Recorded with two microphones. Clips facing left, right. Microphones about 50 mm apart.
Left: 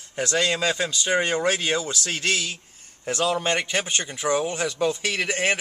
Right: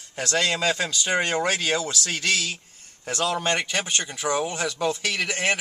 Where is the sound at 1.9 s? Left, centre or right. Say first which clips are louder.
Even; left.